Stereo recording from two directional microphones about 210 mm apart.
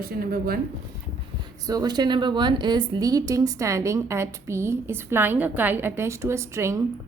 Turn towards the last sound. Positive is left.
turn(degrees=-15)  # may be behind; listen again after turning